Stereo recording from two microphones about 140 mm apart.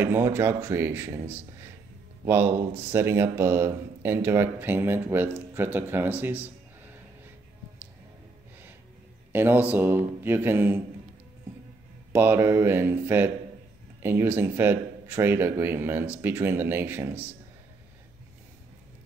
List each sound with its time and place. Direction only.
0.0 s a man's voice: 15° right (ahead or behind)
9.3 s a man's voice: 15° right (ahead or behind)
12.1 s a man's voice: 15° right (ahead or behind)